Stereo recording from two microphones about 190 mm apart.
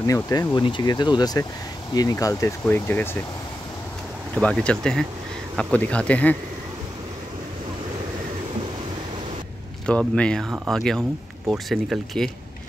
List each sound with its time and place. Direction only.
0.0 s speech: 15° left (ahead or behind)
4.4 s speech: 5° left (ahead or behind)
9.8 s speech: 5° left (ahead or behind)